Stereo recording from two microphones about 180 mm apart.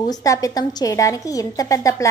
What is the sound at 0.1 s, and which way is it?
A woman's voice, 20° left (ahead or behind).